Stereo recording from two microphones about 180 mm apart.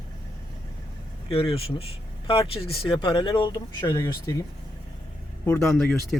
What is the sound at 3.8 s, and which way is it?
Speech, 15° left (ahead or behind).